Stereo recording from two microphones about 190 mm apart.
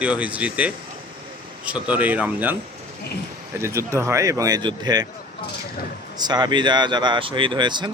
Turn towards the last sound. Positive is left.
turn(degrees=-25)  # may be behind; listen again after turning